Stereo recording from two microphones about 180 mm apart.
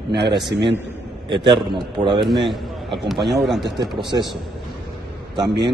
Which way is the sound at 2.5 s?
Centre (ahead or behind).